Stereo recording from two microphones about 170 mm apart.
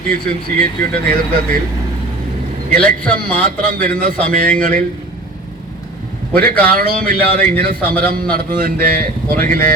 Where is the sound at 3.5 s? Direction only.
55° right (ahead or behind).